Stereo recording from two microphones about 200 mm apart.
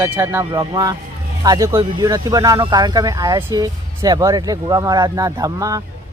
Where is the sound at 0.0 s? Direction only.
10° right (ahead or behind).